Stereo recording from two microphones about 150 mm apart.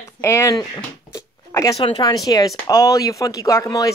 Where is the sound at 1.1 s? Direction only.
20° left (ahead or behind).